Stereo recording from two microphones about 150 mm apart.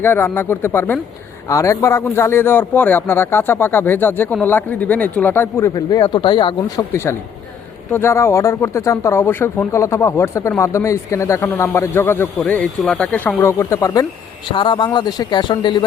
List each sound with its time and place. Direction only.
0.0 s speech: 15° left (ahead or behind); by 6.8 s 30° left (ahead or behind)
6.9 s speech: 15° left (ahead or behind)